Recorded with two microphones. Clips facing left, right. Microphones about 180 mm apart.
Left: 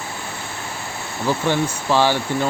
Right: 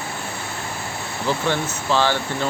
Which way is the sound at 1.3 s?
10° left (ahead or behind).